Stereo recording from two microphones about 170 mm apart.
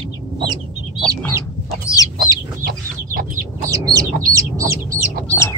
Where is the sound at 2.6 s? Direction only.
60° right (ahead or behind).